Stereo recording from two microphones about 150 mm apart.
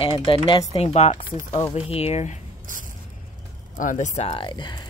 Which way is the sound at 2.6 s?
60° right (ahead or behind).